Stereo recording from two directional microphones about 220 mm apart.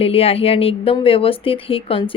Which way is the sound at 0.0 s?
25° left (ahead or behind).